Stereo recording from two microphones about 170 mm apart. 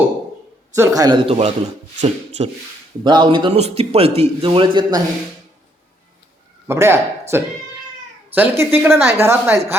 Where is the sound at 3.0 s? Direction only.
25° right (ahead or behind).